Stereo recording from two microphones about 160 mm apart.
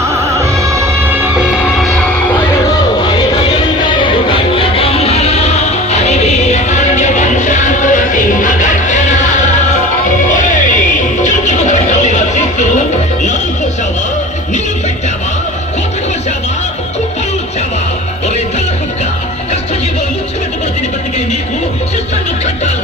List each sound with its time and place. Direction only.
0.1 s music: 20° right (ahead or behind)
2.6 s music: 30° left (ahead or behind); by 12.6 s 45° left (ahead or behind)